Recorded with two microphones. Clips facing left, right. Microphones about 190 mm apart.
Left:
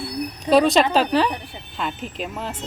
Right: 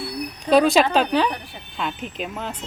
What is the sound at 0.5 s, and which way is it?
Speech, centre (ahead or behind).